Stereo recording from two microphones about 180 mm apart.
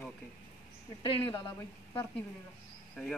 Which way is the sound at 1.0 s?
25° left (ahead or behind).